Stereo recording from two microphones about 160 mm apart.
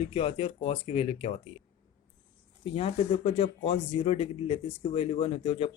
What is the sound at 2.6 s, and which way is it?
Speech, 40° left (ahead or behind).